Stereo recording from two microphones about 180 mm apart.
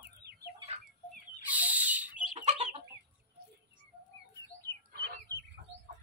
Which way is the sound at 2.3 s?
40° right (ahead or behind).